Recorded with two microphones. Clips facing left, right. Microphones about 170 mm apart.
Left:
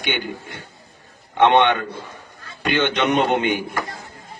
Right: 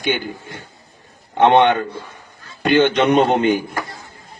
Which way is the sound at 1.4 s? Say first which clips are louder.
Right 3 dB; 40° right (ahead or behind).